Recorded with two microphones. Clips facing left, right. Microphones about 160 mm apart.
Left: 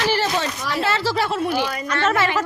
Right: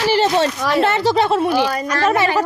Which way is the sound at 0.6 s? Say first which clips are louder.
Right 7 dB; 60° right (ahead or behind).